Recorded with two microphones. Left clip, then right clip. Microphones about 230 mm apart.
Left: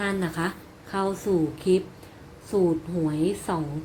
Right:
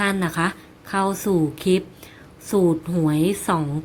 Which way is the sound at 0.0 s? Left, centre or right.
Right.